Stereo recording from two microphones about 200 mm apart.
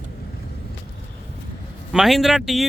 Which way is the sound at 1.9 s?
Centre (ahead or behind).